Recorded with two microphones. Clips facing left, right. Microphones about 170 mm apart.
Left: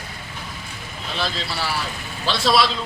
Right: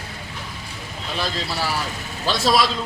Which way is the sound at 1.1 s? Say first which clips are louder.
Right 1 dB; 15° right (ahead or behind).